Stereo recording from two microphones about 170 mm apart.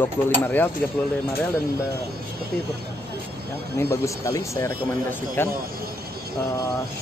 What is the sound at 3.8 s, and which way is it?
Speech, 15° left (ahead or behind).